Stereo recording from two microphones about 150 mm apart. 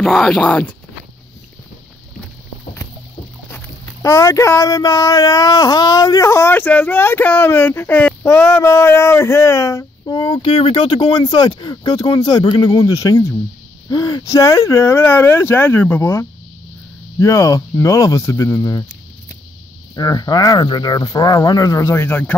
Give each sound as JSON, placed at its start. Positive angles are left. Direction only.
{"t": 0.0, "sound": "speech", "side_deg": 0}
{"t": 4.0, "sound": "speech", "side_deg": 20}
{"t": 20.0, "sound": "speech", "side_deg": 25}